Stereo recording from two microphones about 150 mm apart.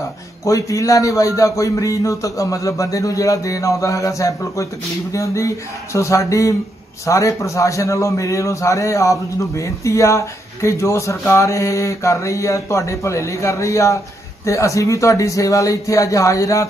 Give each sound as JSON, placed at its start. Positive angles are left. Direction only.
{"t": 0.5, "sound": "a man's voice", "side_deg": 20}